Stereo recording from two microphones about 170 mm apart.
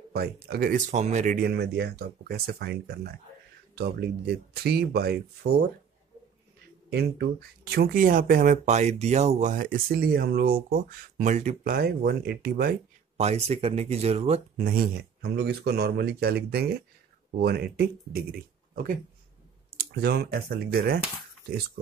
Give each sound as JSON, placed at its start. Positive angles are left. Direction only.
{"t": 0.1, "sound": "speech", "side_deg": -65}
{"t": 6.9, "sound": "speech", "side_deg": -70}
{"t": 13.2, "sound": "speech", "side_deg": -40}
{"t": 14.6, "sound": "speech", "side_deg": -55}
{"t": 15.3, "sound": "speech", "side_deg": -70}
{"t": 19.8, "sound": "speech", "side_deg": -65}